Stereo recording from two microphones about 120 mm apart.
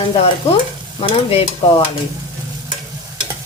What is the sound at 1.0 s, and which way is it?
Speech, 50° left (ahead or behind).